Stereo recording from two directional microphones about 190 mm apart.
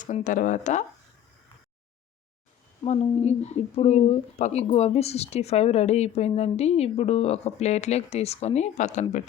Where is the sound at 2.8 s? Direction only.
35° left (ahead or behind).